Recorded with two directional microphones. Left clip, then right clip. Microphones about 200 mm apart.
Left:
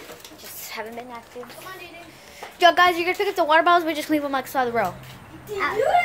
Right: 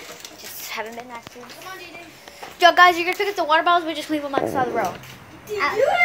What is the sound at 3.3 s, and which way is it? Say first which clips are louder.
A woman's voice: left 1 dB; 20° left (ahead or behind).